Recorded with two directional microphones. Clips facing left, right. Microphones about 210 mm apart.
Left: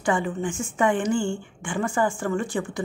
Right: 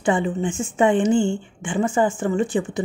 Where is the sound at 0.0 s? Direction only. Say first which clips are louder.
Right 4 dB; 25° right (ahead or behind).